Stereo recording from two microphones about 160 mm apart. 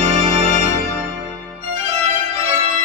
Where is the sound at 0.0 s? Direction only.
40° right (ahead or behind).